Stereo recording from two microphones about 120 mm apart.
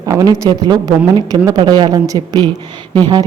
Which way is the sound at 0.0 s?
30° right (ahead or behind).